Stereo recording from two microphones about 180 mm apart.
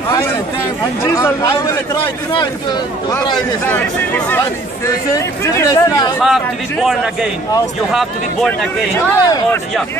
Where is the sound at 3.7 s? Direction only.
10° left (ahead or behind).